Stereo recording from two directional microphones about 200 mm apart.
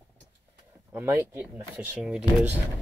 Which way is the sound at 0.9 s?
10° right (ahead or behind).